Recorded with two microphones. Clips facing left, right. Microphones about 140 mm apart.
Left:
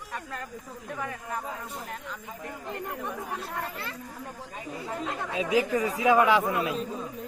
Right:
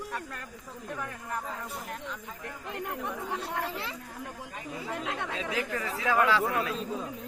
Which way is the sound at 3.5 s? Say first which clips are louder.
Right 1 dB; 20° right (ahead or behind).